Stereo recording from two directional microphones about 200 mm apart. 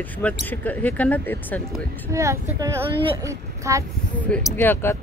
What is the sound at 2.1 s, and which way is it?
A child's voice, 15° right (ahead or behind).